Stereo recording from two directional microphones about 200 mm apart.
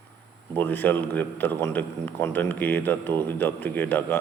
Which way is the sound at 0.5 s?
10° left (ahead or behind).